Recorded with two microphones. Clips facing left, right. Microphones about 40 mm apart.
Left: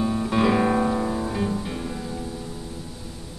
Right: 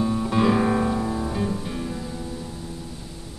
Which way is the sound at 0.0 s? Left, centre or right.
Centre.